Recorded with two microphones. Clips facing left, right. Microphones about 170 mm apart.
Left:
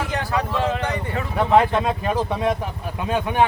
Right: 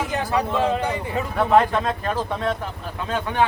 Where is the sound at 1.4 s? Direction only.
5° left (ahead or behind).